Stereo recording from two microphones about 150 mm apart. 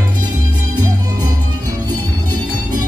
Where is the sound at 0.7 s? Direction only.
25° right (ahead or behind).